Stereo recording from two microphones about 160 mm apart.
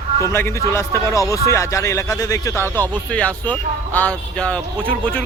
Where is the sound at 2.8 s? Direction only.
10° left (ahead or behind).